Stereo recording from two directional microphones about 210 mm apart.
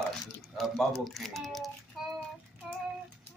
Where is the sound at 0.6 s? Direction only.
Centre (ahead or behind).